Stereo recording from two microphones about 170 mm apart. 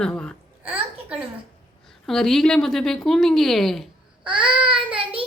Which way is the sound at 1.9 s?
Centre (ahead or behind).